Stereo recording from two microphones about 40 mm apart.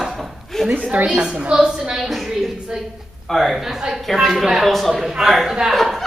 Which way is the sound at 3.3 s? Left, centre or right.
Centre.